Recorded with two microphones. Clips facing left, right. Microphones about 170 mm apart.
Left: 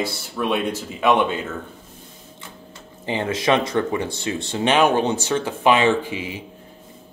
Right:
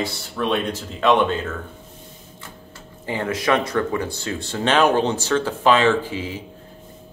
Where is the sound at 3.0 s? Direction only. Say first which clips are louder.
Left 1 dB; 25° left (ahead or behind).